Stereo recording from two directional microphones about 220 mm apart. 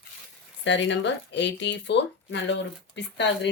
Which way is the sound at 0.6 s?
55° left (ahead or behind).